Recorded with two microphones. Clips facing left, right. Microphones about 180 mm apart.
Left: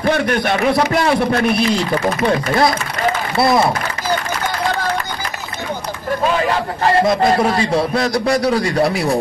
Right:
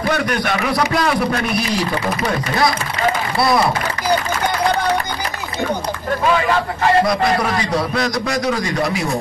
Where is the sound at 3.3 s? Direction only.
25° left (ahead or behind).